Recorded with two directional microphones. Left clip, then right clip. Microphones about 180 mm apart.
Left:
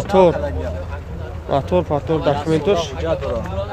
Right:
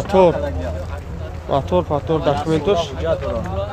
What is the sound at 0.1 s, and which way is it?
Speech, 10° left (ahead or behind).